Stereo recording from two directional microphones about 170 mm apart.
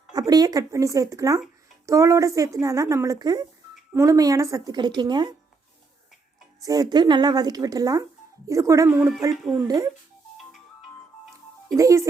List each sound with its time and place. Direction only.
0.1 s a woman's voice: 20° right (ahead or behind)
6.6 s a woman's voice: 20° right (ahead or behind); by 9.2 s 5° right (ahead or behind)
9.6 s speech: 20° right (ahead or behind)
10.3 s music: centre (ahead or behind)
11.7 s speech: 20° right (ahead or behind)